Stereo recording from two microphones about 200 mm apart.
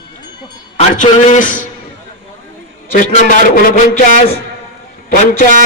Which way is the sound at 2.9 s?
40° left (ahead or behind).